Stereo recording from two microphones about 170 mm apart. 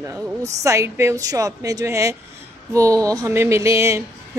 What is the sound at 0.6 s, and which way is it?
A woman's voice, 15° right (ahead or behind).